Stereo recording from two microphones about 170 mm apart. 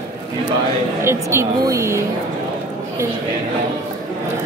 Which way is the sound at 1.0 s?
15° right (ahead or behind).